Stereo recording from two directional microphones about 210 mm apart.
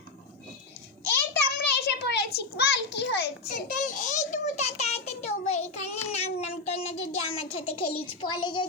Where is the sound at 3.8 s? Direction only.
35° left (ahead or behind).